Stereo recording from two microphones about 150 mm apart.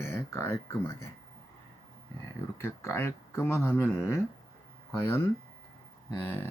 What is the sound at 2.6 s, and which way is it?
Speech, 15° left (ahead or behind).